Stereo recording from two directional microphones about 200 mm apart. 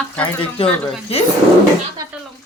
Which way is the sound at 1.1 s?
30° left (ahead or behind).